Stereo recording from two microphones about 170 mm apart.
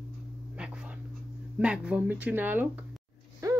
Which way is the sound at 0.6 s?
5° right (ahead or behind).